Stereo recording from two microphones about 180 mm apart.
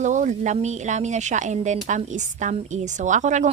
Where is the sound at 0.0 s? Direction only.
45° right (ahead or behind).